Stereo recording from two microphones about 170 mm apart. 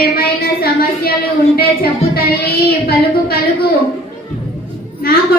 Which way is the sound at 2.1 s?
60° left (ahead or behind).